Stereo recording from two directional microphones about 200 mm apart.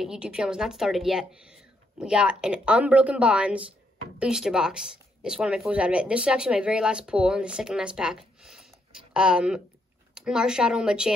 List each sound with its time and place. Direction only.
0.0 s speech: 5° right (ahead or behind)